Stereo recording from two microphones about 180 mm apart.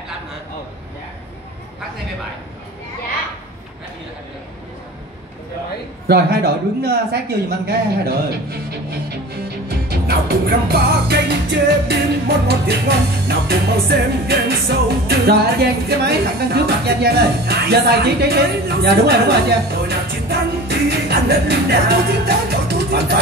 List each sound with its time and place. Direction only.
6.0 s music: 65° right (ahead or behind)
16.0 s speech: 65° right (ahead or behind)